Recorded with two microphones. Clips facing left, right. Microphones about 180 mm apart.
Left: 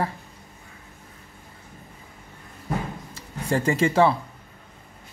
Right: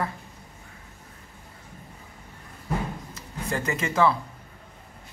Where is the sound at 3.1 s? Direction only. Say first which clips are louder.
Left 8 dB; 30° left (ahead or behind).